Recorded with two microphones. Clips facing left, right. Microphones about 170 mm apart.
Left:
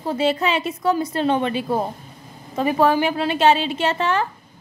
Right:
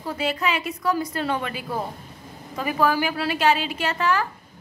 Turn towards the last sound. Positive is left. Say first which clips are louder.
# left 3 dB
turn(degrees=25)  # may be behind; listen again after turning